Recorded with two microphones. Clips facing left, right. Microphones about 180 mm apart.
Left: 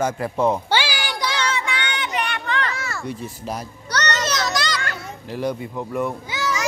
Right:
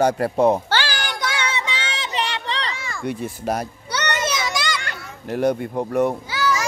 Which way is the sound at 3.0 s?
65° right (ahead or behind).